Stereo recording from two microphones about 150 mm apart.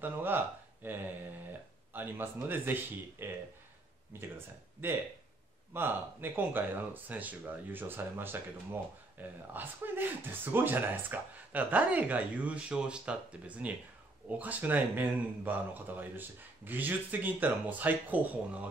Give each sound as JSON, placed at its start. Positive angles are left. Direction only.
{"t": 0.0, "sound": "speech", "side_deg": -15}
{"t": 5.7, "sound": "speech", "side_deg": -15}
{"t": 9.5, "sound": "speech", "side_deg": -10}